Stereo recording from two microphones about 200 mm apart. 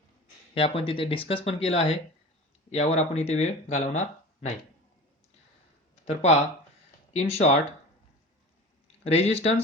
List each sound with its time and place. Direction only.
0.5 s speech: 30° left (ahead or behind)
6.1 s speech: 35° left (ahead or behind)
9.0 s speech: 30° left (ahead or behind)